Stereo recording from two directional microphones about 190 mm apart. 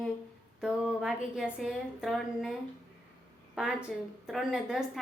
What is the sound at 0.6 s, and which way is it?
A woman's voice, 5° right (ahead or behind).